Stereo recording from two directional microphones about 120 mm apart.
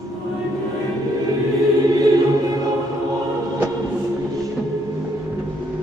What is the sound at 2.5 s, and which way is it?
Music, 30° right (ahead or behind).